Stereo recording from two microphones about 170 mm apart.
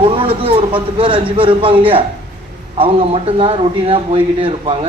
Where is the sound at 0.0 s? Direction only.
35° right (ahead or behind).